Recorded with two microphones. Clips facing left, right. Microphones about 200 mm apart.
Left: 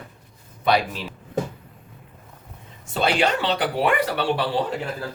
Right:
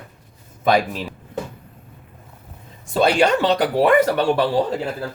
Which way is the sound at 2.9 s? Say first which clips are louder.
Right 5 dB; 45° right (ahead or behind).